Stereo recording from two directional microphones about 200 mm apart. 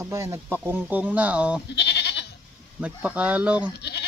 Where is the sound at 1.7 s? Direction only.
55° left (ahead or behind).